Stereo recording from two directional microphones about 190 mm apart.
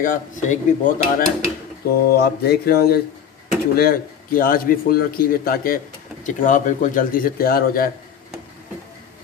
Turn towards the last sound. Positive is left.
turn(degrees=50)  # may be behind; listen again after turning